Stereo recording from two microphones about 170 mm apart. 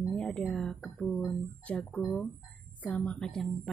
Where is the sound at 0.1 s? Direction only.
5° left (ahead or behind).